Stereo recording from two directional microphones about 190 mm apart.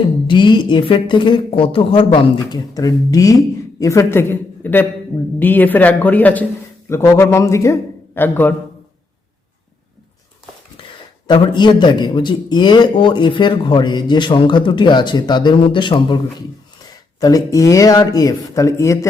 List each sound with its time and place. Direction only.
0.3 s a man's voice: 25° left (ahead or behind)
10.8 s a sound: 30° left (ahead or behind)
11.3 s a man's voice: 25° left (ahead or behind)